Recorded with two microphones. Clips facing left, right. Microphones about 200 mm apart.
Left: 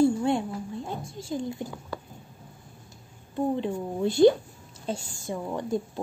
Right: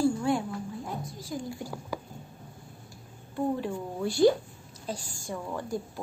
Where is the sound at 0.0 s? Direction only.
25° left (ahead or behind).